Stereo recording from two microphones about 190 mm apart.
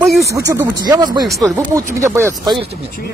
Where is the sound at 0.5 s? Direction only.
20° right (ahead or behind).